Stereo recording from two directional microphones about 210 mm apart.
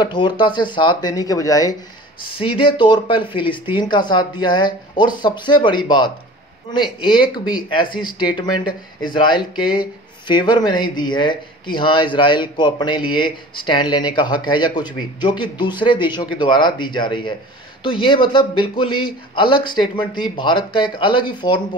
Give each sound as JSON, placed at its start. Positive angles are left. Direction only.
{"t": 0.0, "sound": "speech", "side_deg": 20}